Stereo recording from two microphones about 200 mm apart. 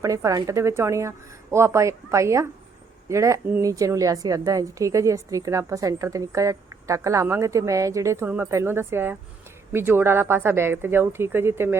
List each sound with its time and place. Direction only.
0.0 s a woman's voice: 15° right (ahead or behind)